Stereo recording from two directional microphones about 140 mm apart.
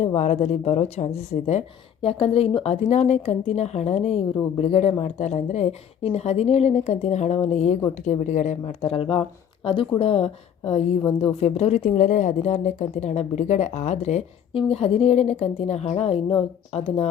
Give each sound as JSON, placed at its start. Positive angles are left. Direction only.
{"t": 0.0, "sound": "a woman's voice", "side_deg": 50}
{"t": 8.8, "sound": "a woman's voice", "side_deg": 40}